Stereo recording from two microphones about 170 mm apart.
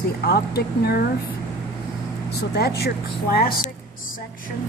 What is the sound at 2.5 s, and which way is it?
Speech, 70° left (ahead or behind).